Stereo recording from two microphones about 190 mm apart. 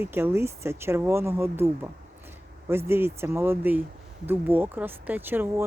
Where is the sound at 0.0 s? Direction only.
10° right (ahead or behind).